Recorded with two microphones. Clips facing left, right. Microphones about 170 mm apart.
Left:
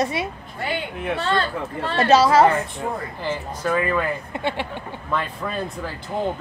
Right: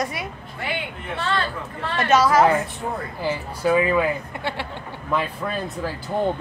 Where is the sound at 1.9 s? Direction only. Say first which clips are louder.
Left 2 dB; 30° left (ahead or behind).